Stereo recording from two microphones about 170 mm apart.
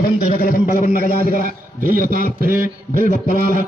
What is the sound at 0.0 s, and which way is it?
A man's voice, 60° left (ahead or behind).